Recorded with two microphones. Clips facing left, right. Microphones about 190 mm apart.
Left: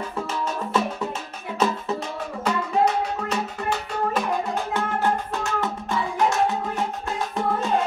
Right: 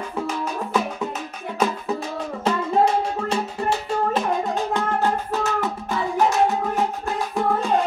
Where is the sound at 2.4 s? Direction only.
30° right (ahead or behind).